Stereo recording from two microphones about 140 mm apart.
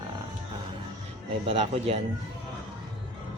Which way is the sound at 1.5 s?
50° right (ahead or behind).